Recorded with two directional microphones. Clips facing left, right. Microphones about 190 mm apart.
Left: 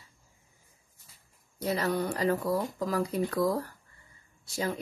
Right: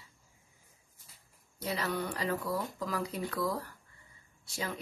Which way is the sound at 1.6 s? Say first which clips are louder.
Left 5 dB; 45° left (ahead or behind).